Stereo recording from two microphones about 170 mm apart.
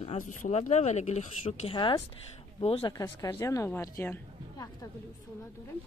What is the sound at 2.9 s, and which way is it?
Speech, 20° left (ahead or behind).